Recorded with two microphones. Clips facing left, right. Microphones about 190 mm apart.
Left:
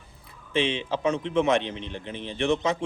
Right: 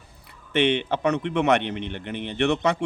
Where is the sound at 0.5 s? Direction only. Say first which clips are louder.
Right 4 dB; 65° right (ahead or behind).